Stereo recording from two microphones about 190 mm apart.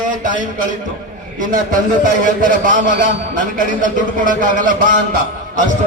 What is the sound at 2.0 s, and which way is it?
A man's voice, 45° right (ahead or behind).